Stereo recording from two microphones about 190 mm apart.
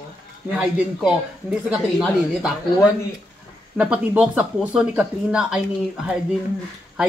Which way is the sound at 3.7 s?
5° right (ahead or behind).